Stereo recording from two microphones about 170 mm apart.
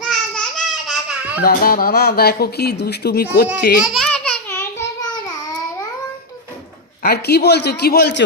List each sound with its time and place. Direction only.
0.0 s babbling: 5° left (ahead or behind)
1.4 s speech: 60° left (ahead or behind)
3.8 s babbling: 5° left (ahead or behind)
7.0 s speech: 70° left (ahead or behind)